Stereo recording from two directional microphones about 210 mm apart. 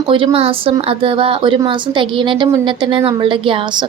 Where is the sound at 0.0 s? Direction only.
20° right (ahead or behind).